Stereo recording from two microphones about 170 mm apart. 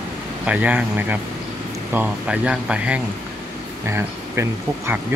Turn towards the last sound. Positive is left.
turn(degrees=-15)  # may be behind; listen again after turning